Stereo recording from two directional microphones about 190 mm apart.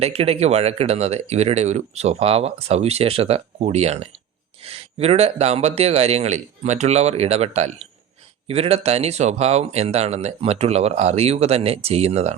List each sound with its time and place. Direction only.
0.0 s speech: 30° right (ahead or behind)